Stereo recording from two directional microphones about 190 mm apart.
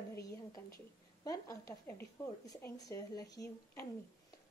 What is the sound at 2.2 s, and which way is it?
A woman's voice, 15° left (ahead or behind).